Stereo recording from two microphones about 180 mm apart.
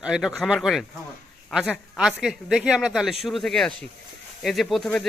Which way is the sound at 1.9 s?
5° right (ahead or behind).